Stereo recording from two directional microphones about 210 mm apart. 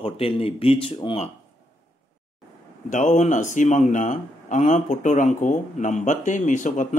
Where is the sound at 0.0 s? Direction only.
25° left (ahead or behind).